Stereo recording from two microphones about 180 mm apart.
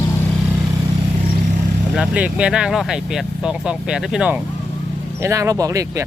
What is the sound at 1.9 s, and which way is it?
Speech, 5° right (ahead or behind).